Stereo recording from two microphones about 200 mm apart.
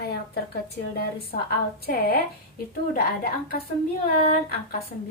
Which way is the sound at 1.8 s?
50° left (ahead or behind).